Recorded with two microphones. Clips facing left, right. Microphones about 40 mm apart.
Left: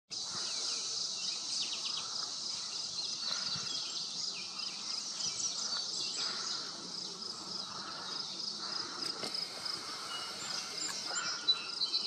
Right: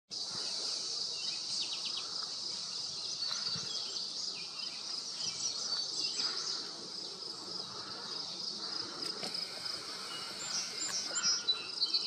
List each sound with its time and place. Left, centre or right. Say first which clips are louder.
5.4 s insect: right 2 dB; left
11.1 s bird: left 1 dB; left